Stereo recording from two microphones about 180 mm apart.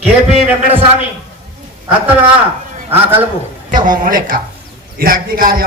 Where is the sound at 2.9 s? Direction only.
10° right (ahead or behind).